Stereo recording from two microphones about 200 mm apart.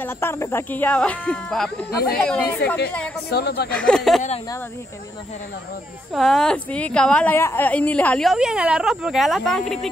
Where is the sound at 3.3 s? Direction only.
55° left (ahead or behind).